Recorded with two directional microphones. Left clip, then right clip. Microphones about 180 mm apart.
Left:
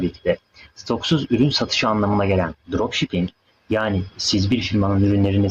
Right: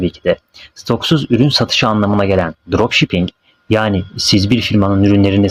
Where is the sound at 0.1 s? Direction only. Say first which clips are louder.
Right 6 dB; 25° right (ahead or behind).